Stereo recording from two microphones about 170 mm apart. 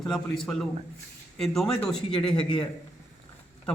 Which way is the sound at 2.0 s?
30° left (ahead or behind).